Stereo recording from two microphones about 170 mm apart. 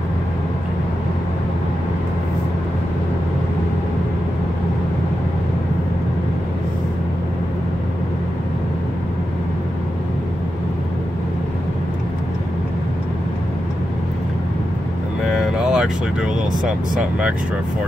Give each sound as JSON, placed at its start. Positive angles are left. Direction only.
{"t": 15.2, "sound": "vehicle", "side_deg": -5}